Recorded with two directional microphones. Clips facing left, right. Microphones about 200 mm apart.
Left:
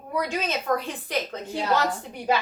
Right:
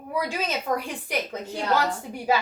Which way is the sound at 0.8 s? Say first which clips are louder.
Even; 10° right (ahead or behind).